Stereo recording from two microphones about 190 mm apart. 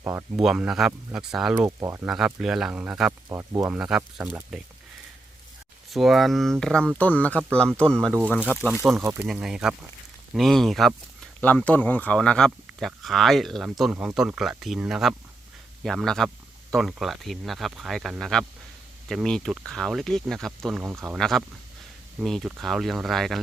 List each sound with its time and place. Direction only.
0.0 s speech: 15° right (ahead or behind)
0.4 s speech: 5° right (ahead or behind)
1.5 s speech: 15° right (ahead or behind)
2.0 s speech: 5° right (ahead or behind)
3.1 s speech: 20° right (ahead or behind)
3.7 s speech: 5° right (ahead or behind)
5.9 s speech: centre (ahead or behind)
8.7 s speech: 5° right (ahead or behind)
20.9 s speech: 15° right (ahead or behind)
21.2 s speech: centre (ahead or behind)